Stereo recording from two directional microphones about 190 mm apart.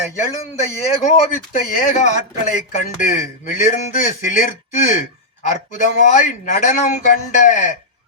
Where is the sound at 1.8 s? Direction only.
40° left (ahead or behind).